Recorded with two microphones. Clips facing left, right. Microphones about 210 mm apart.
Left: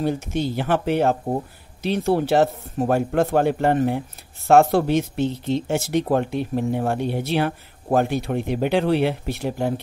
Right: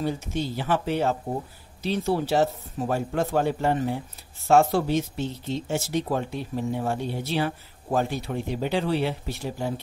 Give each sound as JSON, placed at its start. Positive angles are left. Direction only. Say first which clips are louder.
{"t": 0.0, "sound": "speech", "louder": "left 5 dB", "side_deg": 60}